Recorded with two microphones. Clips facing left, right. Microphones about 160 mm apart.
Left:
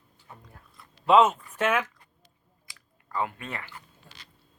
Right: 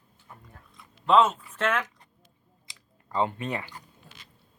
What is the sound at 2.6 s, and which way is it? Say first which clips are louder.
Chewing: right 1 dB; 20° right (ahead or behind).